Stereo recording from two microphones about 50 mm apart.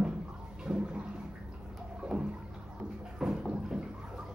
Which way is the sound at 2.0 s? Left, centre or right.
Centre.